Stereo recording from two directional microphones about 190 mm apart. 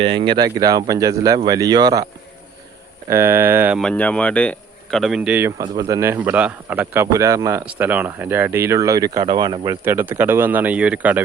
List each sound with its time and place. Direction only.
0.0 s speech: 25° right (ahead or behind)
3.1 s speech: 10° right (ahead or behind)
3.8 s speech: 5° left (ahead or behind); by 9.7 s 25° right (ahead or behind)
9.8 s speech: 10° right (ahead or behind)